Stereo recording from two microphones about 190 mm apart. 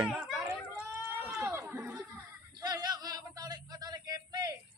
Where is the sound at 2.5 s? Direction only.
20° right (ahead or behind).